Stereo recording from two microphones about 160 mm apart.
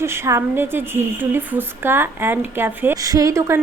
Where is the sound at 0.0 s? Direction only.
15° right (ahead or behind).